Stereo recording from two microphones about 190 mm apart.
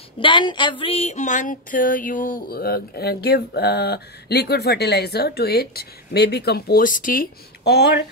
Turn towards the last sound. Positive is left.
turn(degrees=55)  # may be behind; listen again after turning